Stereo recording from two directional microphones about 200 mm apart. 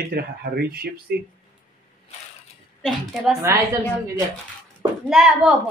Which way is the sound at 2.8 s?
Centre (ahead or behind).